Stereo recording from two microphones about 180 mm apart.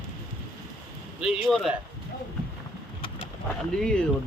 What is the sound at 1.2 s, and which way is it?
Speech, centre (ahead or behind).